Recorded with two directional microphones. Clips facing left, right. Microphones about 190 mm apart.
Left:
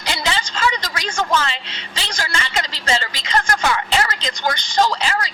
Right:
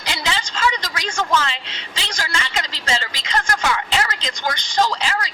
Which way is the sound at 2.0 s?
35° left (ahead or behind).